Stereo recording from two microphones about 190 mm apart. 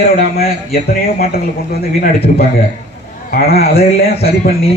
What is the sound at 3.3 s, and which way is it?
A man's voice, 50° left (ahead or behind).